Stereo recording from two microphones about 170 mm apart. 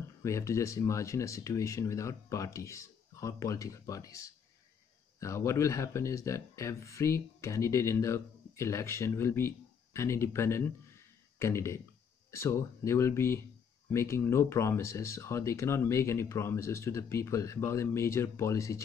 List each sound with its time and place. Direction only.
0.2 s speech: 15° left (ahead or behind)